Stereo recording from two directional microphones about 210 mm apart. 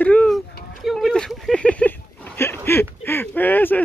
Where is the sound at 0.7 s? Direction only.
Centre (ahead or behind).